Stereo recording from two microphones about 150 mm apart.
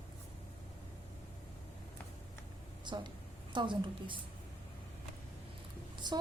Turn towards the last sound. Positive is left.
turn(degrees=-30)  # may be behind; listen again after turning